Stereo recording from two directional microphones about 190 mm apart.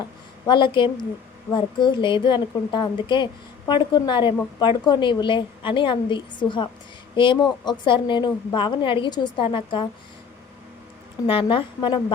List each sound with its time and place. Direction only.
0.4 s a woman's voice: 25° left (ahead or behind)
11.3 s a woman's voice: 30° left (ahead or behind)